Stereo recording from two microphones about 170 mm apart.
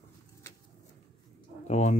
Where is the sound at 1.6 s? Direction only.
40° left (ahead or behind).